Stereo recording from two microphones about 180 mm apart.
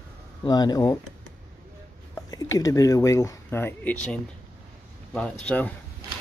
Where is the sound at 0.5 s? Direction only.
20° left (ahead or behind).